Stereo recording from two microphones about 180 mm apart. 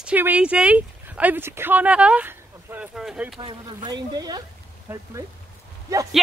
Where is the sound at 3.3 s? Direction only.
25° right (ahead or behind).